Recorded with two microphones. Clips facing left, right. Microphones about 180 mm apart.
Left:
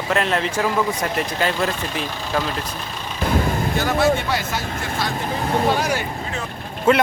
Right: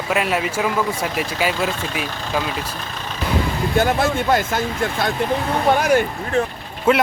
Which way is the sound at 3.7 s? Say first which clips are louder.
Right 1 dB; 50° right (ahead or behind).